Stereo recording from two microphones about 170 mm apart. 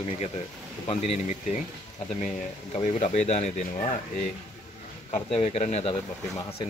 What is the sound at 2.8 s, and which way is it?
Speech, 40° left (ahead or behind).